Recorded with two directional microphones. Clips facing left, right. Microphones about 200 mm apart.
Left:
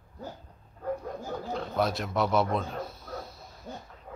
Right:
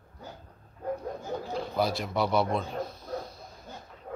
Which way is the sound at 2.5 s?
5° left (ahead or behind).